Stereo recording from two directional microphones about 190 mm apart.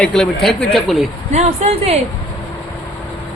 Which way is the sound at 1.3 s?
35° right (ahead or behind).